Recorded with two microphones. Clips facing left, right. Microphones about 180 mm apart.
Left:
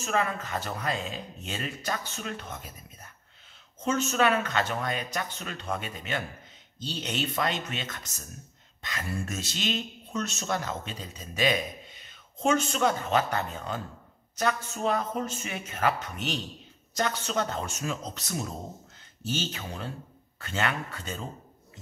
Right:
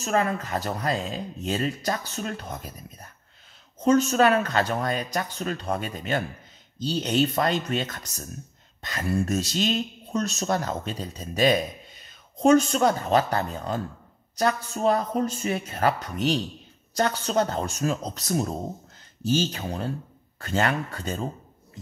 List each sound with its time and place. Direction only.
0.0 s speech: 40° right (ahead or behind)